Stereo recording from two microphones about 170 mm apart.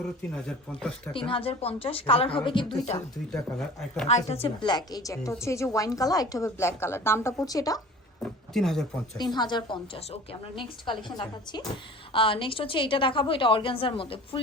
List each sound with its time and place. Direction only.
0.3 s a woman's voice: 5° left (ahead or behind)
1.1 s a woman's voice: 30° left (ahead or behind)
3.3 s a woman's voice: 5° left (ahead or behind)
4.1 s a woman's voice: 35° left (ahead or behind); by 7.8 s 20° left (ahead or behind)
8.5 s a woman's voice: centre (ahead or behind)
9.1 s a woman's voice: 25° left (ahead or behind)